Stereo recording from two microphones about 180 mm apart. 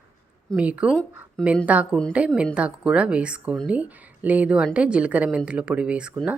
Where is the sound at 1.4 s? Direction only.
5° left (ahead or behind).